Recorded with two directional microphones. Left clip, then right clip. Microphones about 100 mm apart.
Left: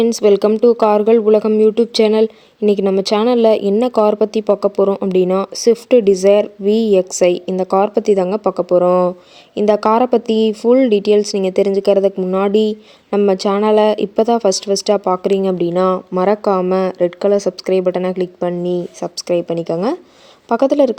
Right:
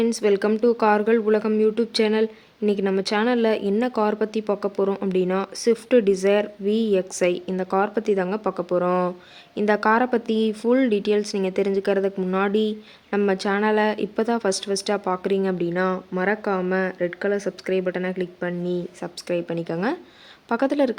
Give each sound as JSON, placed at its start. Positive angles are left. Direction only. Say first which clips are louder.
{"t": 0.0, "sound": "speech", "louder": "left 8 dB", "side_deg": 50}
{"t": 15.4, "sound": "speech", "louder": "left 9 dB", "side_deg": 55}